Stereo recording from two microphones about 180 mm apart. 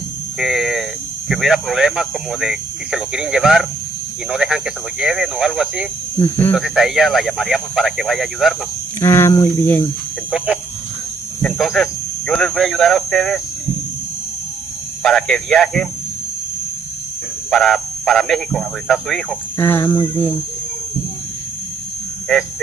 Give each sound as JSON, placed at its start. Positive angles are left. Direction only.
{"t": 0.4, "sound": "speech", "side_deg": 0}
{"t": 6.1, "sound": "speech", "side_deg": 15}
{"t": 6.5, "sound": "speech", "side_deg": 0}
{"t": 9.0, "sound": "speech", "side_deg": 15}
{"t": 10.3, "sound": "speech", "side_deg": -5}
{"t": 15.0, "sound": "speech", "side_deg": 5}
{"t": 17.5, "sound": "speech", "side_deg": 0}
{"t": 19.5, "sound": "speech", "side_deg": 15}